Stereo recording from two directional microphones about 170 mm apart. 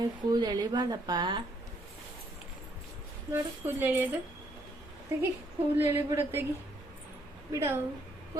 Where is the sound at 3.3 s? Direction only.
10° right (ahead or behind).